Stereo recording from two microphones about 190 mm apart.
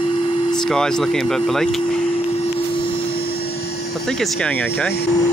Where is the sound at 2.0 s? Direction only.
30° left (ahead or behind).